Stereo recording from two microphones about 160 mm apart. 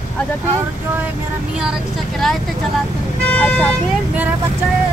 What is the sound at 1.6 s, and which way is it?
Speech, centre (ahead or behind).